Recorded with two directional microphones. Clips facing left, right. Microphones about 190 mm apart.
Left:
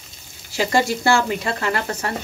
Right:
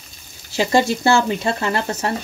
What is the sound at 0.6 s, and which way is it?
Speech, 25° right (ahead or behind).